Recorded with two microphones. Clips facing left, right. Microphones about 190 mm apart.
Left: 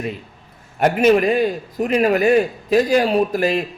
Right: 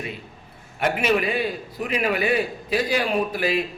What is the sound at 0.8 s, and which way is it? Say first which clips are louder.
A man's voice: left 7 dB; 45° left (ahead or behind).